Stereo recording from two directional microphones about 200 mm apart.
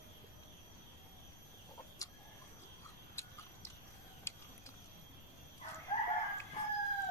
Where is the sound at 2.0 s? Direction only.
15° left (ahead or behind).